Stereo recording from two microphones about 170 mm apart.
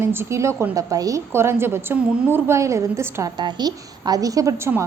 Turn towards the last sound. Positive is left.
turn(degrees=-15)  # may be behind; listen again after turning